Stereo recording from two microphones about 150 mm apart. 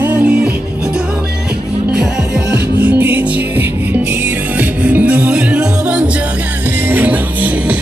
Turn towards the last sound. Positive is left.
turn(degrees=-10)  # may be behind; listen again after turning